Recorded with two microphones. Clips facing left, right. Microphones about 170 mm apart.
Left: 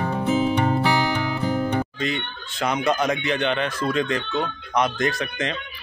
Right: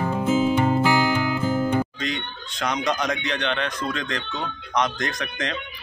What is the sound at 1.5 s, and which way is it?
Music, 15° left (ahead or behind).